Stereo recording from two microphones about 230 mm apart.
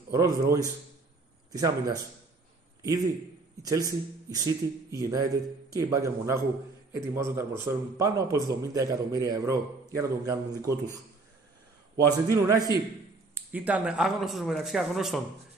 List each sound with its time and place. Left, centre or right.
0.1 s a man's voice: centre
3.6 s a man's voice: centre
12.3 s a man's voice: centre